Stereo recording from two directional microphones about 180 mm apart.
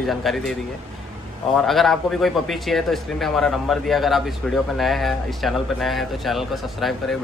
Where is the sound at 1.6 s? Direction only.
Centre (ahead or behind).